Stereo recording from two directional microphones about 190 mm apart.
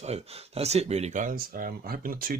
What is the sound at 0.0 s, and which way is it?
Speech, 35° right (ahead or behind).